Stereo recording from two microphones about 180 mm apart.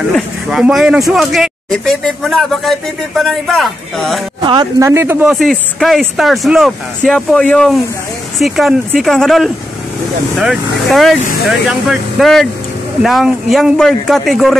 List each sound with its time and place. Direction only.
0.1 s speech: centre (ahead or behind)
4.4 s speech: 25° right (ahead or behind)
5.3 s speech: centre (ahead or behind)